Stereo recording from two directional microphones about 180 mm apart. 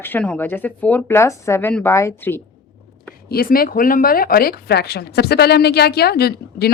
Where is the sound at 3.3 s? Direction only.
55° left (ahead or behind).